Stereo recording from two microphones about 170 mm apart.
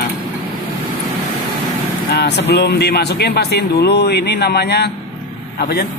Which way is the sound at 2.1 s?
75° left (ahead or behind).